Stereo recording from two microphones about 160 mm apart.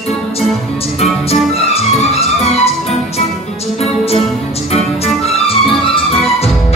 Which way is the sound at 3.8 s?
40° left (ahead or behind).